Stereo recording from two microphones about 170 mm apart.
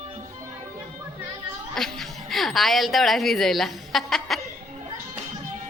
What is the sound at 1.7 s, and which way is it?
Speech, centre (ahead or behind).